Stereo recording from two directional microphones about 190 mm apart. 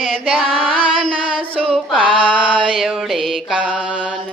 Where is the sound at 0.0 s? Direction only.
Centre (ahead or behind).